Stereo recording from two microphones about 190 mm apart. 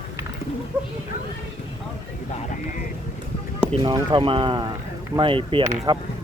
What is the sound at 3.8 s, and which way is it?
Speech, 25° right (ahead or behind).